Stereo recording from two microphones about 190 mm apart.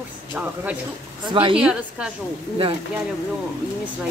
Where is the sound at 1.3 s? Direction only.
25° right (ahead or behind).